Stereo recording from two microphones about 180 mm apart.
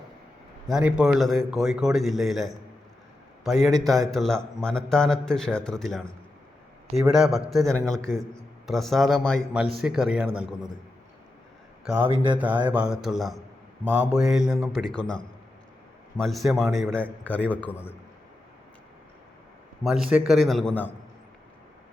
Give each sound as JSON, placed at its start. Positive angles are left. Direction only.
{"t": 0.7, "sound": "a man's voice", "side_deg": -5}
{"t": 12.0, "sound": "speech", "side_deg": -30}
{"t": 12.4, "sound": "mantra", "side_deg": -10}
{"t": 12.7, "sound": "a man's voice", "side_deg": -5}
{"t": 16.1, "sound": "a man's voice", "side_deg": 0}
{"t": 19.8, "sound": "a man's voice", "side_deg": 0}